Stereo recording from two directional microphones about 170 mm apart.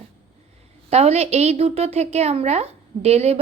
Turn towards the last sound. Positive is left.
turn(degrees=-35)  # may be behind; listen again after turning